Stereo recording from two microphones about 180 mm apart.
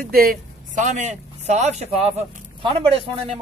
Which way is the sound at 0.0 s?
55° right (ahead or behind).